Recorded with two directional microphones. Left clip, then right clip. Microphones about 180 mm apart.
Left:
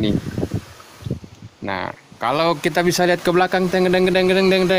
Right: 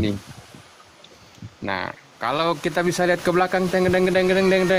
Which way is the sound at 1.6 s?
Centre (ahead or behind).